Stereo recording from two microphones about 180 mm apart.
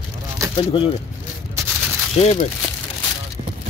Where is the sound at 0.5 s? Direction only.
30° left (ahead or behind).